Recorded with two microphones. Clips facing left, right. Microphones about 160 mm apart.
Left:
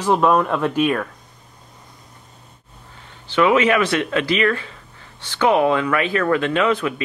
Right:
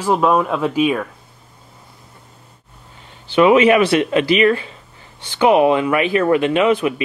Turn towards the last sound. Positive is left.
turn(degrees=-20)  # may be behind; listen again after turning